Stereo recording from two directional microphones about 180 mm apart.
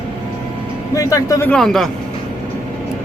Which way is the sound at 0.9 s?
20° left (ahead or behind).